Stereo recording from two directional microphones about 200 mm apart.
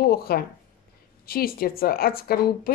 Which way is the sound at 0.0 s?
50° left (ahead or behind).